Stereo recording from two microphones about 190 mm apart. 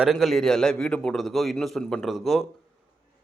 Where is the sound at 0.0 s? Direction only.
Centre (ahead or behind).